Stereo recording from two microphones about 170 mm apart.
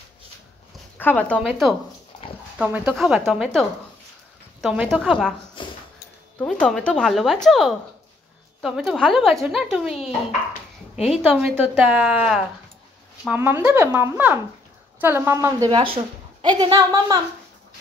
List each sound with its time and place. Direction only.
0.9 s a woman's voice: 10° left (ahead or behind)
5.6 s a sound: 30° left (ahead or behind)
6.4 s a woman's voice: 5° left (ahead or behind); by 15.8 s 20° right (ahead or behind)
15.8 s speech: 30° right (ahead or behind)